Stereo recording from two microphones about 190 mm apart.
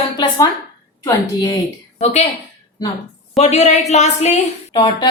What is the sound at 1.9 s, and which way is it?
Speech, 35° left (ahead or behind).